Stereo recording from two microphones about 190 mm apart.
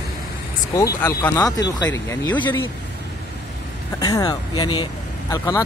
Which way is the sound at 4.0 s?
20° left (ahead or behind).